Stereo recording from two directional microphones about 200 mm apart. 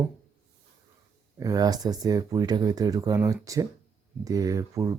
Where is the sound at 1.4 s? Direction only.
20° right (ahead or behind).